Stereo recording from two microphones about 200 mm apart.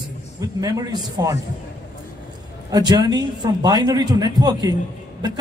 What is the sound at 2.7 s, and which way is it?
Speech, 20° right (ahead or behind).